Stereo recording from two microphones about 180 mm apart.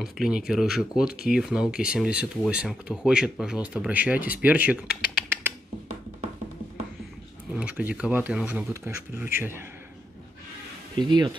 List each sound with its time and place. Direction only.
0.0 s speech: centre (ahead or behind)
7.5 s speech: 10° right (ahead or behind)
11.0 s speech: 25° right (ahead or behind)